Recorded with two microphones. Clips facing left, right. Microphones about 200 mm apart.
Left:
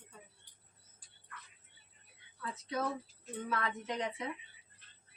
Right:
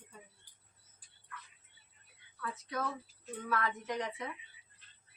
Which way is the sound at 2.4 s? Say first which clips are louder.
Left 1 dB; 25° left (ahead or behind).